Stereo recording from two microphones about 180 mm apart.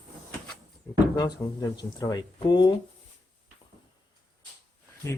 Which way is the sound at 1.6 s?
20° left (ahead or behind).